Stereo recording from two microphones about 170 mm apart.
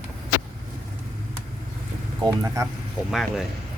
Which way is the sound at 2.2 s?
20° right (ahead or behind).